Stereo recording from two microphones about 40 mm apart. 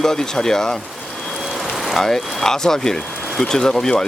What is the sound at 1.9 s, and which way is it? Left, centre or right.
Speech, centre.